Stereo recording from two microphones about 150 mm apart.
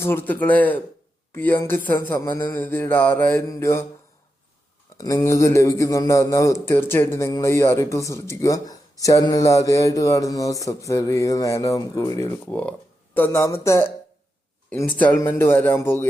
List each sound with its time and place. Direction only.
0.0 s a man's voice: 15° left (ahead or behind)
4.9 s a man's voice: 20° left (ahead or behind)